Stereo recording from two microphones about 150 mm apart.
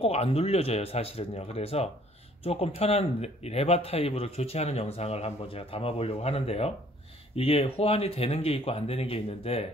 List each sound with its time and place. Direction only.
0.0 s speech: 40° left (ahead or behind)